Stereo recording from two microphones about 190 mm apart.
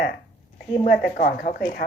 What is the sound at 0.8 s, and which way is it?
Speech, 50° left (ahead or behind).